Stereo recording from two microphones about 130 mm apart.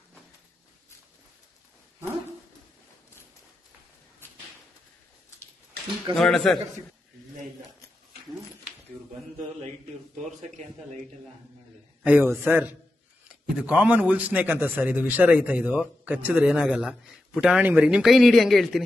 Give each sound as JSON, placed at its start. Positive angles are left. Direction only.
{"t": 4.2, "sound": "a sound", "side_deg": 15}
{"t": 6.1, "sound": "a man's voice", "side_deg": 5}
{"t": 12.0, "sound": "a man's voice", "side_deg": -15}